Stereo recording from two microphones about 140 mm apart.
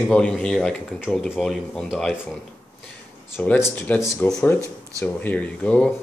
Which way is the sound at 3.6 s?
20° left (ahead or behind).